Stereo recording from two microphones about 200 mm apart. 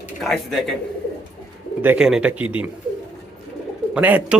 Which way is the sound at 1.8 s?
5° right (ahead or behind).